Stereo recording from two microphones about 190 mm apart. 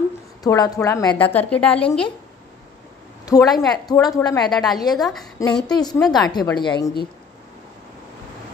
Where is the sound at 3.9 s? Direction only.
20° left (ahead or behind).